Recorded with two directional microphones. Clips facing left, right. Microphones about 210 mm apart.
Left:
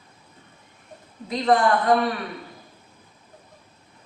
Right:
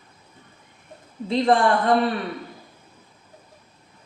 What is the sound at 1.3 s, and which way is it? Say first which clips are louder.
Speech: right 1 dB; 30° right (ahead or behind).